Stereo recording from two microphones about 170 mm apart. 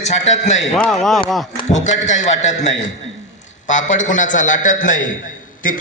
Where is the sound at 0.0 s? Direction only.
45° left (ahead or behind).